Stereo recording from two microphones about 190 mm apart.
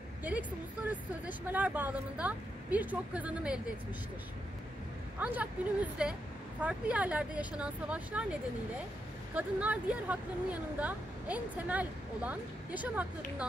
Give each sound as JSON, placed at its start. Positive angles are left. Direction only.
{"t": 0.2, "sound": "speech", "side_deg": -10}
{"t": 5.2, "sound": "a woman's voice", "side_deg": -5}